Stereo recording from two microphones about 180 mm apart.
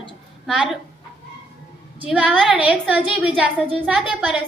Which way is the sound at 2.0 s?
Centre (ahead or behind).